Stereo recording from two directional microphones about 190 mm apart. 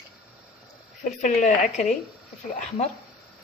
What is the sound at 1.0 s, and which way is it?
Speech, 40° left (ahead or behind).